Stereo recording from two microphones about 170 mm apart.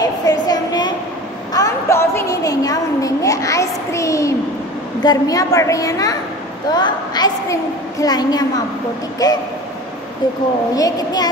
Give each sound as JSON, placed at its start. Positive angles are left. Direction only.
{"t": 0.0, "sound": "a sound", "side_deg": 20}
{"t": 5.0, "sound": "a woman's voice", "side_deg": 20}
{"t": 10.8, "sound": "a woman's voice", "side_deg": 20}